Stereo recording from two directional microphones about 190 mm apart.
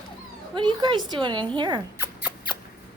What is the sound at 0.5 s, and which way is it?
A woman's voice, 25° right (ahead or behind).